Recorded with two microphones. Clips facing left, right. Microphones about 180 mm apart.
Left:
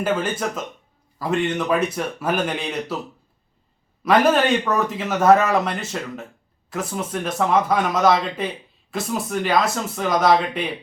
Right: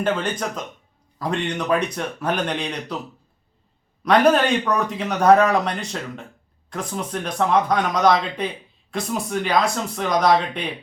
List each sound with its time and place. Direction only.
0.0 s speech: 5° left (ahead or behind)
4.0 s speech: 5° left (ahead or behind)